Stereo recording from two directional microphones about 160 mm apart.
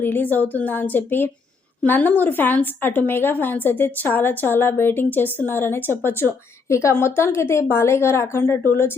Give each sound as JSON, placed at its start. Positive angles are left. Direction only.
{"t": 0.0, "sound": "a woman's voice", "side_deg": 10}